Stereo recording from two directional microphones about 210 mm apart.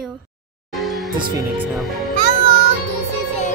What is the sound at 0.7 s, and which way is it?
Music, centre (ahead or behind).